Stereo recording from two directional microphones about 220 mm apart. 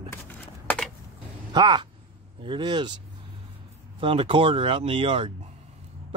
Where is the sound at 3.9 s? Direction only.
25° right (ahead or behind).